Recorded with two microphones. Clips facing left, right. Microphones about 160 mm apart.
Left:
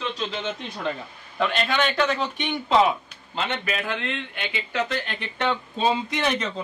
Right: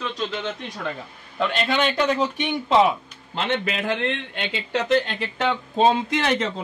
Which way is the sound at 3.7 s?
30° right (ahead or behind).